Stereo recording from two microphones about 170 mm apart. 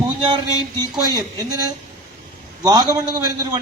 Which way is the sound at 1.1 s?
20° right (ahead or behind).